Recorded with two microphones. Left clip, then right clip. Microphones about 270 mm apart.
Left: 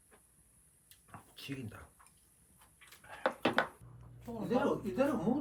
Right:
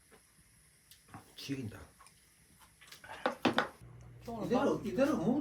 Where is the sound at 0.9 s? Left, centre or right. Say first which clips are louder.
Right 1 dB; centre.